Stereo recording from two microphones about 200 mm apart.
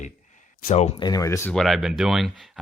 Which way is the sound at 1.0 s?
15° left (ahead or behind).